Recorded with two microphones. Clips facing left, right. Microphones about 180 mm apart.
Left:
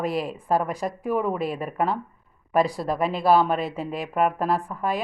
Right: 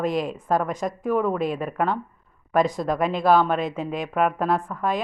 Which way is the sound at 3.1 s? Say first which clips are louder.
Even; 35° left (ahead or behind).